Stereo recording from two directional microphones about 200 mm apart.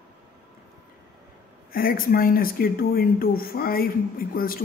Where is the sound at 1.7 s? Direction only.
45° left (ahead or behind).